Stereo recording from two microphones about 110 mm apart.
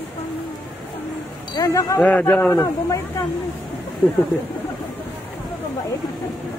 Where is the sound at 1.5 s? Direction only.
30° left (ahead or behind).